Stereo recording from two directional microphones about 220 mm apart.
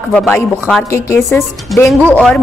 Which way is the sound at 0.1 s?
5° left (ahead or behind).